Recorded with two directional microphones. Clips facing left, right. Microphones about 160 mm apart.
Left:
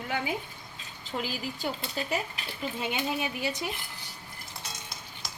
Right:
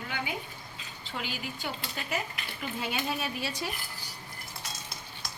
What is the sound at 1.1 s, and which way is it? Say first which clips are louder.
Stir: left 4 dB; 35° left (ahead or behind).